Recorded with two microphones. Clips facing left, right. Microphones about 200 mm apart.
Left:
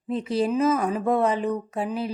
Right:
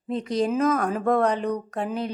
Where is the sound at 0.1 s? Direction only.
5° left (ahead or behind).